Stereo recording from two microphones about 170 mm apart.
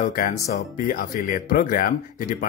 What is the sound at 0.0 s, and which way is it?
Speech, 55° left (ahead or behind).